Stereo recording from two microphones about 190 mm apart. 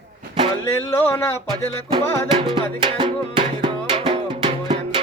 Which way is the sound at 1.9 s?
25° right (ahead or behind).